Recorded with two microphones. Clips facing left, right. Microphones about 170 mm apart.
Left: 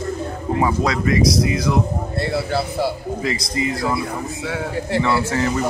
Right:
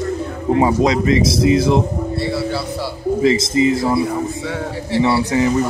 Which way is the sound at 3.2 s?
25° right (ahead or behind).